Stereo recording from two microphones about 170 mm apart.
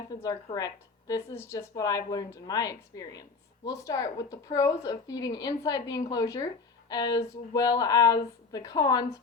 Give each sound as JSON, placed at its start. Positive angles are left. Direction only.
{"t": 0.1, "sound": "a woman's voice", "side_deg": 25}